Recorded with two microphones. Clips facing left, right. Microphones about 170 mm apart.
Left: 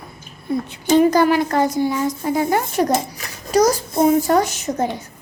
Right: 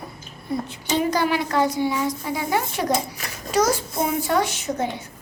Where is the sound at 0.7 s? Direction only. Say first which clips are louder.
Left 10 dB; 50° left (ahead or behind).